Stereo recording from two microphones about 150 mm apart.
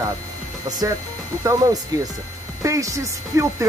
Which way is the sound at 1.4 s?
20° right (ahead or behind).